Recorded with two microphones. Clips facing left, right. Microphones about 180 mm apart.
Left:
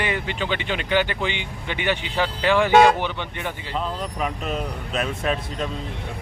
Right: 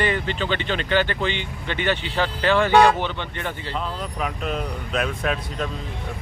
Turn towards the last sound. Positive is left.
turn(degrees=0)  # may be behind; listen again after turning